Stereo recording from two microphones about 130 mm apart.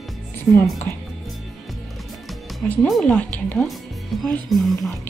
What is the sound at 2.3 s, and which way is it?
Music, centre (ahead or behind).